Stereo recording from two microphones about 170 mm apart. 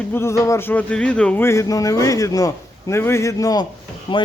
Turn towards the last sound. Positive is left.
turn(degrees=30)  # may be behind; listen again after turning